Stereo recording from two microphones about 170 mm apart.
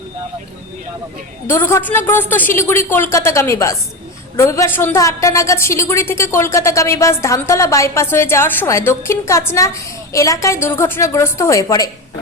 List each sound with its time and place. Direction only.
1.5 s a woman's voice: 15° left (ahead or behind)